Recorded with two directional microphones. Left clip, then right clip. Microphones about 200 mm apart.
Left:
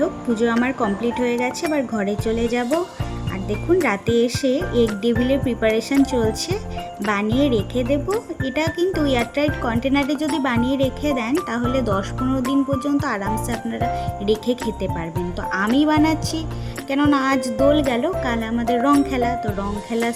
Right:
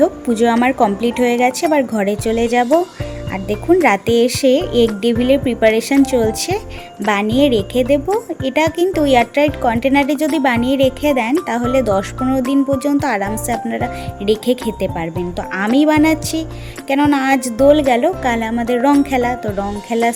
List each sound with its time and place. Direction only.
0.0 s speech: 15° right (ahead or behind)
3.8 s speech: 15° right (ahead or behind)